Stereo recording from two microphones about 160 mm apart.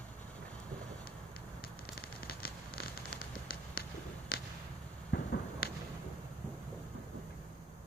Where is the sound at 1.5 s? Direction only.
70° left (ahead or behind).